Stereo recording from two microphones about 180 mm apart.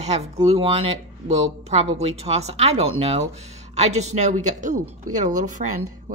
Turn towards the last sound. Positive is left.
turn(degrees=-45)  # may be behind; listen again after turning